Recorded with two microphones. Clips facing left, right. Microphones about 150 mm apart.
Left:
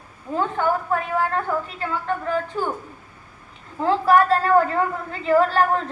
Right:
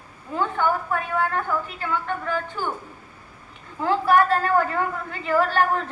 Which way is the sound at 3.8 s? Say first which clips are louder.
Left 2 dB; 35° left (ahead or behind).